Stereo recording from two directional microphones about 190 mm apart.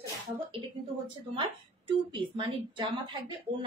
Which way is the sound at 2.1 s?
25° right (ahead or behind).